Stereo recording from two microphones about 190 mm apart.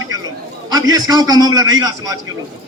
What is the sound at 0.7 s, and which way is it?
A man's voice, 20° right (ahead or behind).